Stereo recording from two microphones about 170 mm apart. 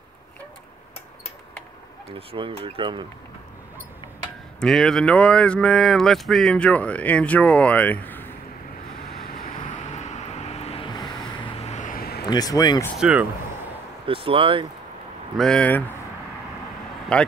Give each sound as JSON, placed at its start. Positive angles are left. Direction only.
{"t": 2.0, "sound": "speech", "side_deg": -30}
{"t": 4.6, "sound": "speech", "side_deg": 5}
{"t": 10.0, "sound": "vehicle", "side_deg": 40}
{"t": 12.3, "sound": "speech", "side_deg": 20}
{"t": 13.0, "sound": "speech", "side_deg": -10}
{"t": 14.0, "sound": "speech", "side_deg": -30}
{"t": 15.3, "sound": "speech", "side_deg": 5}
{"t": 17.1, "sound": "speech", "side_deg": 5}